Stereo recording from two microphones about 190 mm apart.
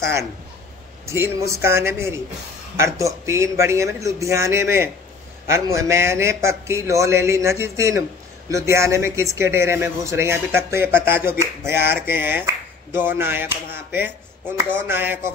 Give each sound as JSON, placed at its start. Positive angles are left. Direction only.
{"t": 1.0, "sound": "speech", "side_deg": -15}